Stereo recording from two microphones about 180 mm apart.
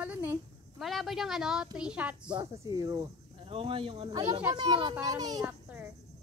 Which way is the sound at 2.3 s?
20° right (ahead or behind).